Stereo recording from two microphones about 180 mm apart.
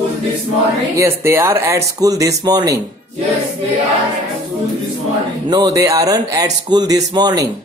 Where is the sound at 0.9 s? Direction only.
15° right (ahead or behind).